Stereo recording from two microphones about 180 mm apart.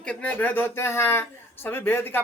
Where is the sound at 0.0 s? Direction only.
5° left (ahead or behind).